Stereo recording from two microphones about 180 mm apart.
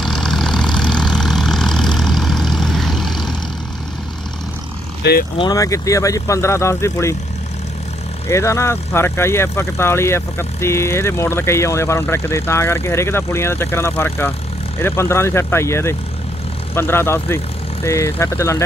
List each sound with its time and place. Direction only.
0.0 s vehicle: centre (ahead or behind)
5.4 s speech: 20° left (ahead or behind)
8.3 s speech: 15° left (ahead or behind)